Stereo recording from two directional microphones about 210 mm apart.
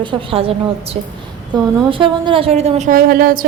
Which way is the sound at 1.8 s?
25° right (ahead or behind).